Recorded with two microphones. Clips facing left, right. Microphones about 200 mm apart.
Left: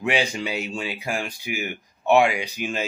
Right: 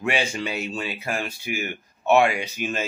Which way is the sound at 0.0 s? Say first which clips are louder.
Left 1 dB; 15° left (ahead or behind).